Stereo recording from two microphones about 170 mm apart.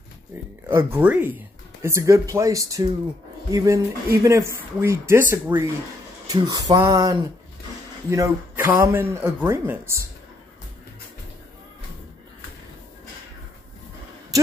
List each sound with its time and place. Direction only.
0.7 s speech: 15° right (ahead or behind)